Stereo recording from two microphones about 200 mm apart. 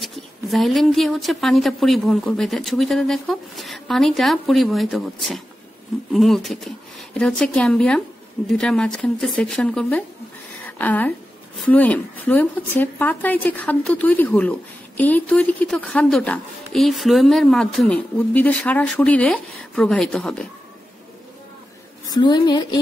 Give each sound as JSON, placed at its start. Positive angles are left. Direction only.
{"t": 0.0, "sound": "a woman's voice", "side_deg": 0}
{"t": 22.0, "sound": "a woman's voice", "side_deg": 20}